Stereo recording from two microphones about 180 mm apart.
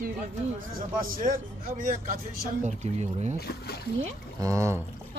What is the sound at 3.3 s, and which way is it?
Speech, 60° left (ahead or behind).